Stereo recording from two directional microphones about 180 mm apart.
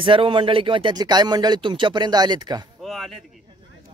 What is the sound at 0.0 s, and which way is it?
Speech, 30° right (ahead or behind).